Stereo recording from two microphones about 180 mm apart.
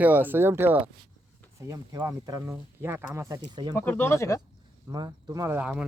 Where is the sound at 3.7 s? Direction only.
10° left (ahead or behind).